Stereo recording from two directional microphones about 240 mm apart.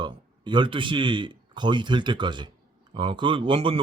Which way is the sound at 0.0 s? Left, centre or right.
Centre.